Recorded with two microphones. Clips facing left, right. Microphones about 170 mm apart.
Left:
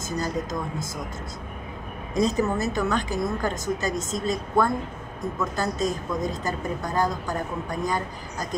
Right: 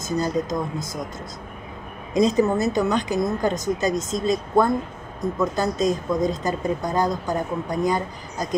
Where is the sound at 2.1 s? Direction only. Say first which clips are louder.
Right 5 dB; 15° right (ahead or behind).